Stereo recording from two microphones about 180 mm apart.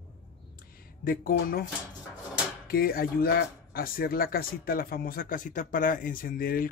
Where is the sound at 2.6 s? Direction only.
55° left (ahead or behind).